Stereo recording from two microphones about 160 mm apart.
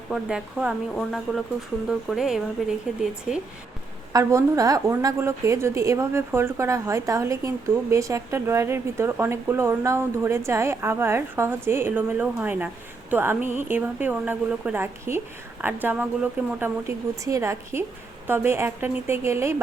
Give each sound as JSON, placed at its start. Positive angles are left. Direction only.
{"t": 0.1, "sound": "speech", "side_deg": -5}
{"t": 4.1, "sound": "a woman's voice", "side_deg": -20}